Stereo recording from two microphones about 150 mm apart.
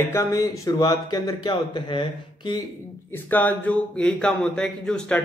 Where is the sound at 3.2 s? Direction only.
10° left (ahead or behind).